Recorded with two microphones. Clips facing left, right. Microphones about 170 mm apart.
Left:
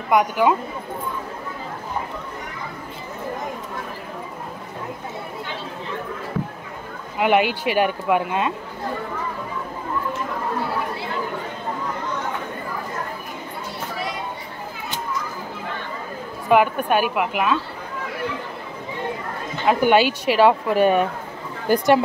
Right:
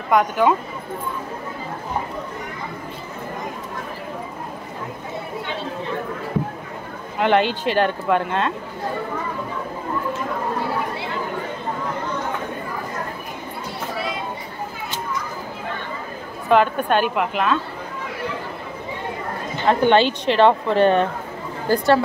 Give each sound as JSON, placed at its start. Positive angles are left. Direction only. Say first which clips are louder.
{"t": 0.1, "sound": "speech", "louder": "even", "side_deg": 10}
{"t": 7.2, "sound": "speech", "louder": "even", "side_deg": 10}
{"t": 16.4, "sound": "speech", "louder": "even", "side_deg": 10}
{"t": 19.6, "sound": "speech", "louder": "right 1 dB", "side_deg": 10}